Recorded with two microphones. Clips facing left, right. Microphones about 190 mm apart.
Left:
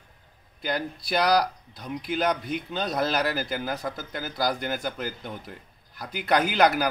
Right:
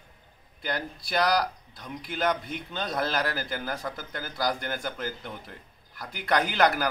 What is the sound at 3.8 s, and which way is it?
Speech, 5° left (ahead or behind).